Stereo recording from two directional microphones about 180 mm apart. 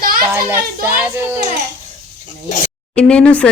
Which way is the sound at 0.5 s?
10° right (ahead or behind).